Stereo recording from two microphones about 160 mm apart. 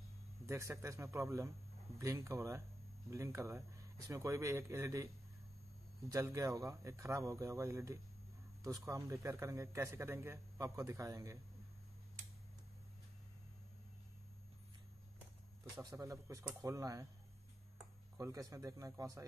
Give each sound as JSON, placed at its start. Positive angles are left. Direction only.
{"t": 0.5, "sound": "a man's voice", "side_deg": -15}
{"t": 15.7, "sound": "a man's voice", "side_deg": -20}
{"t": 18.1, "sound": "a man's voice", "side_deg": -20}